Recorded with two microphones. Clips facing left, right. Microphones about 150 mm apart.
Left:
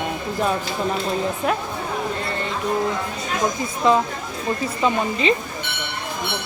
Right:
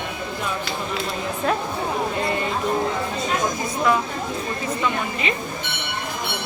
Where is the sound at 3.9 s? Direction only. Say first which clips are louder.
Left 4 dB; 25° left (ahead or behind).